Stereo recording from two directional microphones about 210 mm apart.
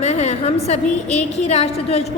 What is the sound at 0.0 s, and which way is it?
A woman's voice, 30° left (ahead or behind).